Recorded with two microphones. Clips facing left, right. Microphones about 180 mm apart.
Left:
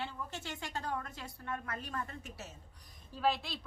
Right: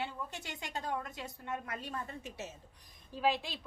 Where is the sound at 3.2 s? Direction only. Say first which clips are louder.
Right 1 dB; 15° right (ahead or behind).